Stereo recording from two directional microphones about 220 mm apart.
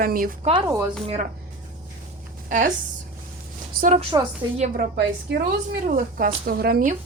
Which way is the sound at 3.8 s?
30° right (ahead or behind).